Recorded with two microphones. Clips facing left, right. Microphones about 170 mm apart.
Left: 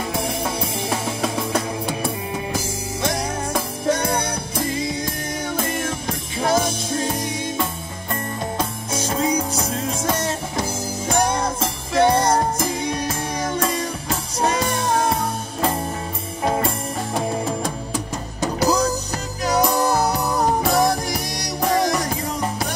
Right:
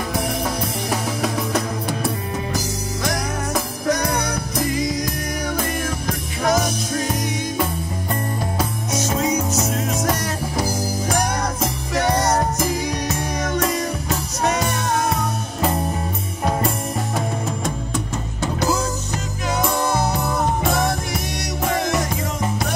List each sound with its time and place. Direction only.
0.6 s music: 25° left (ahead or behind)
18.4 s music: 35° left (ahead or behind)